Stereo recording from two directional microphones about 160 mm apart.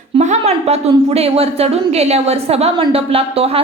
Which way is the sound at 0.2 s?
45° right (ahead or behind).